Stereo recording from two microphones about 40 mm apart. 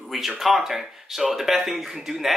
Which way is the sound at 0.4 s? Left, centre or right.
Centre.